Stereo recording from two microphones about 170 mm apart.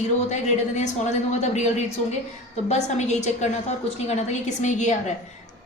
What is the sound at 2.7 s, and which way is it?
Speech, 40° left (ahead or behind).